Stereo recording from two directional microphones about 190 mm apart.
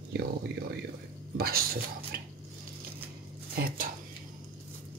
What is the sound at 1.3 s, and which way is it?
Speech, 55° right (ahead or behind).